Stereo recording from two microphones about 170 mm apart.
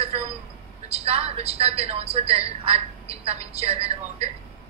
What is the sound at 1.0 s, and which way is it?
A woman's voice, 35° right (ahead or behind).